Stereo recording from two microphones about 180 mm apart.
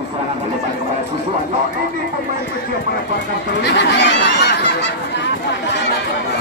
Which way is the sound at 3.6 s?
75° left (ahead or behind).